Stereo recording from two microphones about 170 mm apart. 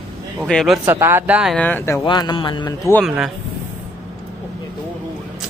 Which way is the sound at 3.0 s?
Centre (ahead or behind).